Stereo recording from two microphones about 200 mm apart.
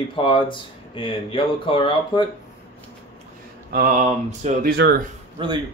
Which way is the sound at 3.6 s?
45° right (ahead or behind).